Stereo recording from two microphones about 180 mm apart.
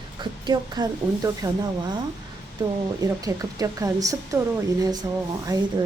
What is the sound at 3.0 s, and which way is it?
A woman's voice, 20° right (ahead or behind).